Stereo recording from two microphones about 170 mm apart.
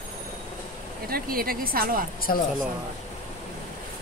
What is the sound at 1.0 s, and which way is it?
A woman's voice, 60° right (ahead or behind).